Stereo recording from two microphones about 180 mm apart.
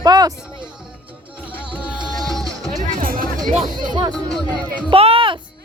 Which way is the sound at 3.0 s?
50° right (ahead or behind).